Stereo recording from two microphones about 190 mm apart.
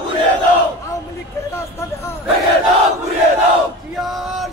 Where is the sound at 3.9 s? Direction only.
Centre (ahead or behind).